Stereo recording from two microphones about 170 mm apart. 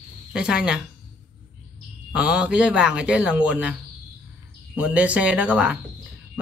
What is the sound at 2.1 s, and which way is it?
Speech, 5° right (ahead or behind).